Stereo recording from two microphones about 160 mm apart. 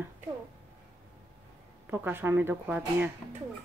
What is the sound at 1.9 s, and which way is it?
Speech, 10° right (ahead or behind).